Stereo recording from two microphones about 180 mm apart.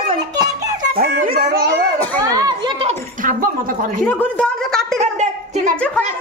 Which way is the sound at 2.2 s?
20° right (ahead or behind).